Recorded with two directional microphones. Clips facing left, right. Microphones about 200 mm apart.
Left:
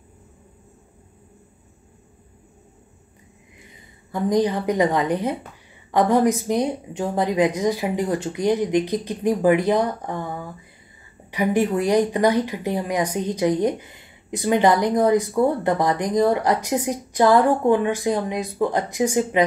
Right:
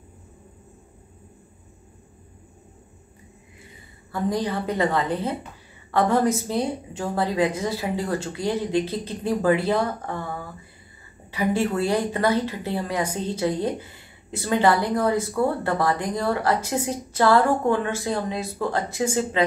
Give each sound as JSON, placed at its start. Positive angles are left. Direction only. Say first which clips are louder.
{"t": 4.1, "sound": "speech", "louder": "left 5 dB", "side_deg": 20}